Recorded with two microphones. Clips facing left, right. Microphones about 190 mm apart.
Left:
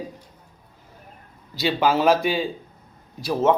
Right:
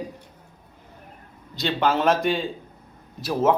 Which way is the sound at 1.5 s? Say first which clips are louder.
Left 2 dB; 5° left (ahead or behind).